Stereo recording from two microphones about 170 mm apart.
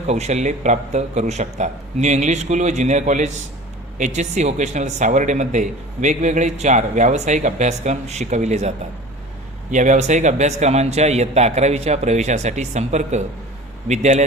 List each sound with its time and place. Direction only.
0.1 s a man's voice: 40° right (ahead or behind)
9.7 s a man's voice: 45° right (ahead or behind)